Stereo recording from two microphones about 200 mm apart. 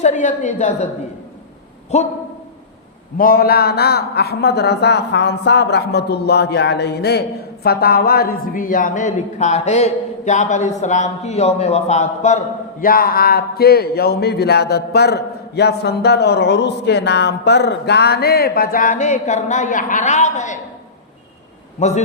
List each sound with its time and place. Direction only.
0.0 s a woman's voice: 35° left (ahead or behind)
1.9 s a woman's voice: 35° left (ahead or behind)
3.2 s a man's voice: 50° left (ahead or behind)
12.8 s a man's voice: 45° left (ahead or behind)
21.8 s a man's voice: 35° left (ahead or behind)